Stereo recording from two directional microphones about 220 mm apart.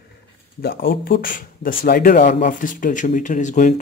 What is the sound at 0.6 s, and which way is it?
Speech, 45° left (ahead or behind).